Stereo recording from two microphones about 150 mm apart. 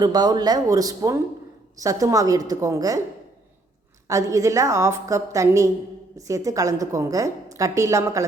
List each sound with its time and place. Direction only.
0.0 s a woman's voice: 25° right (ahead or behind)
4.1 s a woman's voice: 20° right (ahead or behind)